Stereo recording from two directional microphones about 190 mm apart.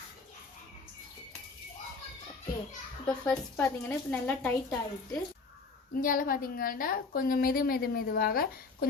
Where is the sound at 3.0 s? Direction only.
5° left (ahead or behind).